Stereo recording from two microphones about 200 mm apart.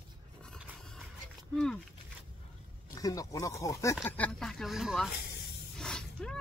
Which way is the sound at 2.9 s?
20° left (ahead or behind).